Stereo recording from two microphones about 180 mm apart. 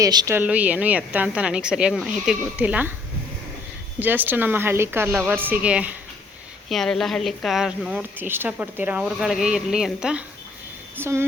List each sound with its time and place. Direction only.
0.0 s speech: 20° right (ahead or behind)
0.3 s a woman's voice: 10° right (ahead or behind)
4.0 s a woman's voice: 10° right (ahead or behind)